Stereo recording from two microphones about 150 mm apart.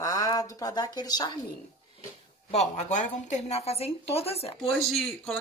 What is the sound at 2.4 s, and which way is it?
A woman's voice, 45° left (ahead or behind).